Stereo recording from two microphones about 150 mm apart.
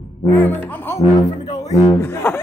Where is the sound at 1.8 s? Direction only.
15° left (ahead or behind).